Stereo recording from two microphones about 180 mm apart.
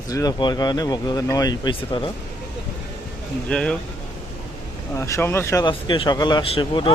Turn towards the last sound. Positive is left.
turn(degrees=30)  # may be behind; listen again after turning